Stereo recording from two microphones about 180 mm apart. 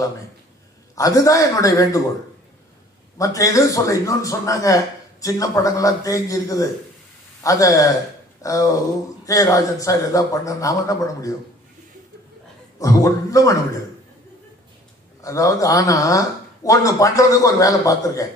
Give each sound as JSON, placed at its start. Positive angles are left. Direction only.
{"t": 0.9, "sound": "a man's voice", "side_deg": 20}
{"t": 3.2, "sound": "a man's voice", "side_deg": 20}
{"t": 12.7, "sound": "a man's voice", "side_deg": 20}
{"t": 15.2, "sound": "a man's voice", "side_deg": 20}